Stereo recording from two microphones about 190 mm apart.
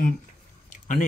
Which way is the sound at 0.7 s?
40° left (ahead or behind).